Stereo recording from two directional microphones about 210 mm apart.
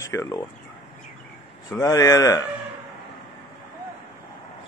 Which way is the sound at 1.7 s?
15° left (ahead or behind).